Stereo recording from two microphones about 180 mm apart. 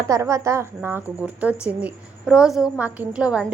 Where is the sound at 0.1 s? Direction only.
15° right (ahead or behind).